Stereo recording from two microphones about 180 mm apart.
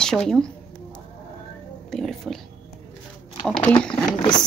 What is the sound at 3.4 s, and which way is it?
Speech, 5° left (ahead or behind).